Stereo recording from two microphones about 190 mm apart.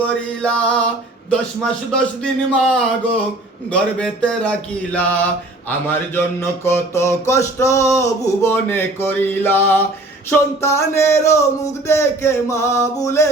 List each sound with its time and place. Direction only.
0.0 s speech: 5° left (ahead or behind)
1.9 s speech: 5° left (ahead or behind)
3.7 s a sound: 5° left (ahead or behind)